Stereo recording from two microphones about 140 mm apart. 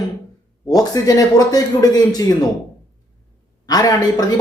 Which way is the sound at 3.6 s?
25° left (ahead or behind).